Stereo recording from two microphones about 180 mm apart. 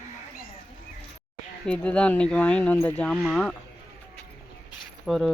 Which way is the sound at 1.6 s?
5° left (ahead or behind).